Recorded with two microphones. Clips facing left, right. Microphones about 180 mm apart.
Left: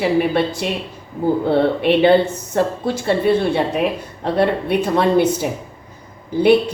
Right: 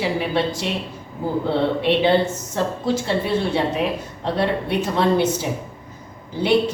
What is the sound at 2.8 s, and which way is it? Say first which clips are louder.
A woman's voice: left 4 dB; 55° left (ahead or behind).